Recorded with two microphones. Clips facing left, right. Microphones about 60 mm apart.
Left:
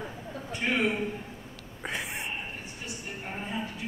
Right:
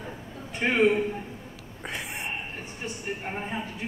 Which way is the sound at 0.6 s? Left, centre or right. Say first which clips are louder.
Right 5 dB; right.